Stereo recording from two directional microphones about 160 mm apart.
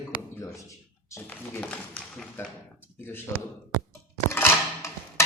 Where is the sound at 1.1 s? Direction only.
10° left (ahead or behind).